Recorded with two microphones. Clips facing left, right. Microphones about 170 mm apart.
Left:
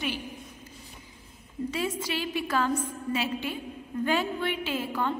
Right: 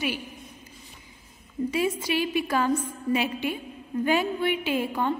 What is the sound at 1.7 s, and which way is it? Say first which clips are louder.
A woman's voice: right 6 dB; 10° right (ahead or behind).